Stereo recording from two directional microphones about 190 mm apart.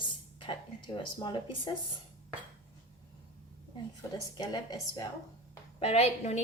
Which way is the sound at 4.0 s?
20° left (ahead or behind).